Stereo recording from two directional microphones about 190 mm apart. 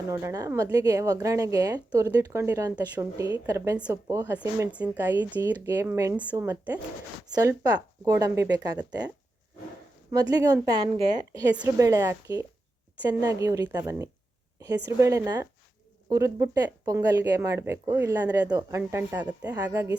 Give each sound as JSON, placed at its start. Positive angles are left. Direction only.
{"t": 0.1, "sound": "a woman's voice", "side_deg": -15}
{"t": 10.1, "sound": "a woman's voice", "side_deg": -20}